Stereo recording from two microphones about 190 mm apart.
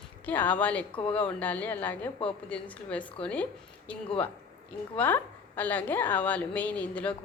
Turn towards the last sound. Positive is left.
turn(degrees=10)  # may be behind; listen again after turning